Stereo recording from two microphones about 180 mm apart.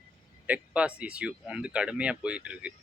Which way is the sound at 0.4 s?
10° right (ahead or behind).